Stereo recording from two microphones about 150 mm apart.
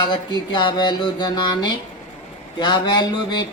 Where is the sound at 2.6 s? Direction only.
30° left (ahead or behind).